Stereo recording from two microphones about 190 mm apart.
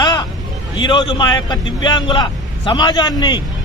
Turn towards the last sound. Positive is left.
turn(degrees=25)  # may be behind; listen again after turning